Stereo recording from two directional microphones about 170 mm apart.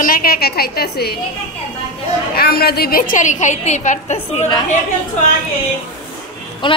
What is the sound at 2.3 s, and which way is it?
A woman's voice, 65° left (ahead or behind).